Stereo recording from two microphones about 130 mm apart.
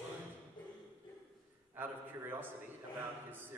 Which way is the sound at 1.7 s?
15° right (ahead or behind).